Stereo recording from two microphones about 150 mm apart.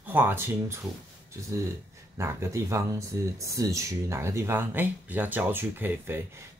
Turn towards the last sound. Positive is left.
turn(degrees=-15)  # may be behind; listen again after turning